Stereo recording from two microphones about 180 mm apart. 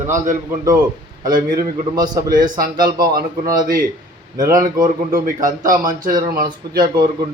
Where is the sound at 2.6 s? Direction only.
55° right (ahead or behind).